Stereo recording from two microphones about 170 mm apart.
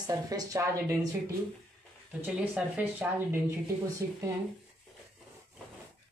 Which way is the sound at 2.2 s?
10° right (ahead or behind).